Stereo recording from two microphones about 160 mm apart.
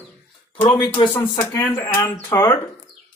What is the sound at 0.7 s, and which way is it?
Speech, 30° left (ahead or behind).